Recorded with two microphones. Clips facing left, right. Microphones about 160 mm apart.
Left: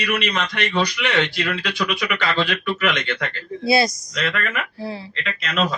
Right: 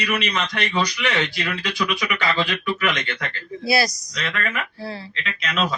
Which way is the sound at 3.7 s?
25° left (ahead or behind).